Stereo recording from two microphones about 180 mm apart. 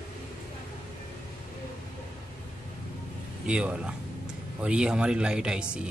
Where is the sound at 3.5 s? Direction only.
5° right (ahead or behind).